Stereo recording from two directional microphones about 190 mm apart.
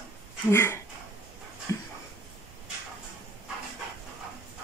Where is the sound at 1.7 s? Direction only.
15° left (ahead or behind).